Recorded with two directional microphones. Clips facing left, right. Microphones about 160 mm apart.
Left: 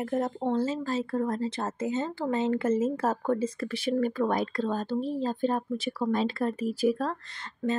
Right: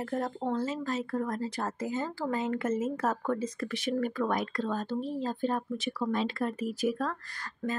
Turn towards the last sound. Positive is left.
turn(degrees=25)  # may be behind; listen again after turning